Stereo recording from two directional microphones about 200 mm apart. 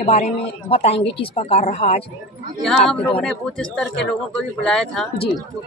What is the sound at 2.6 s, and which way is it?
Speech, 5° left (ahead or behind).